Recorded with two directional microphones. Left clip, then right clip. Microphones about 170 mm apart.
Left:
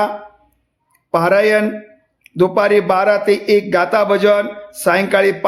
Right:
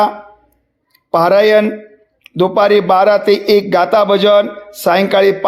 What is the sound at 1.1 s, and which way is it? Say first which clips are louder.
A man's voice: right 4 dB; 15° right (ahead or behind).